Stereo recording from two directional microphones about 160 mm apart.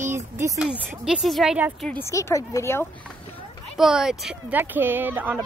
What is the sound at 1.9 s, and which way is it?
Speech, 15° left (ahead or behind).